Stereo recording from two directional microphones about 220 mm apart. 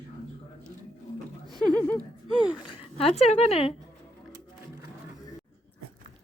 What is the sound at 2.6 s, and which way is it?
Speech, 20° left (ahead or behind).